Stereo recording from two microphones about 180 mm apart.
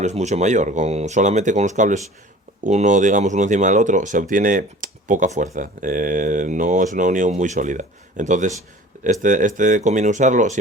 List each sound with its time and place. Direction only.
0.0 s speech: 40° right (ahead or behind)